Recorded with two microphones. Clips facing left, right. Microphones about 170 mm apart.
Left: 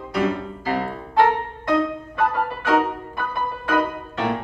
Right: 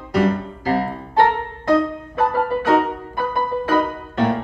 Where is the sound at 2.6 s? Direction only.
40° right (ahead or behind).